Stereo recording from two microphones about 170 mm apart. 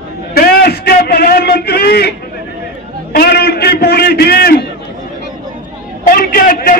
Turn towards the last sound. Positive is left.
turn(degrees=60)  # may be behind; listen again after turning